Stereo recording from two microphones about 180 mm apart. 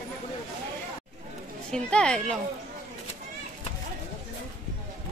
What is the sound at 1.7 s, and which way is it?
Speech, 5° left (ahead or behind).